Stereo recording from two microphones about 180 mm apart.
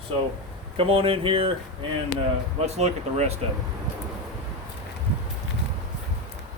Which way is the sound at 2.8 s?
35° right (ahead or behind).